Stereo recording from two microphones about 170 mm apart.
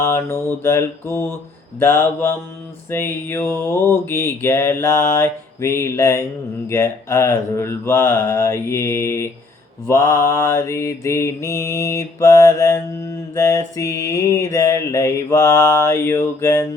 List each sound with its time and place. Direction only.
0.0 s mantra: 15° left (ahead or behind)